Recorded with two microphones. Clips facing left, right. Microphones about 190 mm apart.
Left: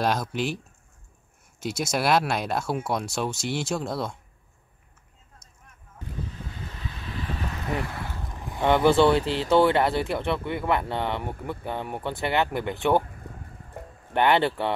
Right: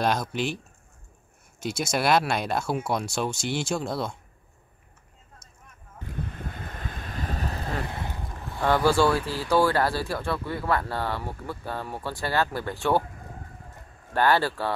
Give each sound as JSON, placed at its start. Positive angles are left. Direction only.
{"t": 0.0, "sound": "speech", "side_deg": 0}
{"t": 1.6, "sound": "speech", "side_deg": 5}
{"t": 6.1, "sound": "vehicle", "side_deg": -55}
{"t": 7.8, "sound": "boat", "side_deg": -20}
{"t": 8.5, "sound": "speech", "side_deg": 20}
{"t": 14.1, "sound": "speech", "side_deg": 20}